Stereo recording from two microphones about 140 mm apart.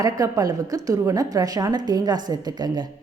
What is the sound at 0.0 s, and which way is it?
A woman's voice, 25° right (ahead or behind).